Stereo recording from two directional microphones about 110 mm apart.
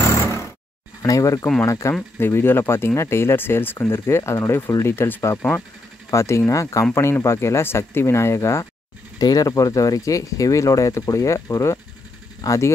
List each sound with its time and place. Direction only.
1.0 s speech: 30° left (ahead or behind)